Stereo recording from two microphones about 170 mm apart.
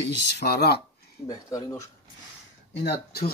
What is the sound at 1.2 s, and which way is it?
Speech, 20° left (ahead or behind).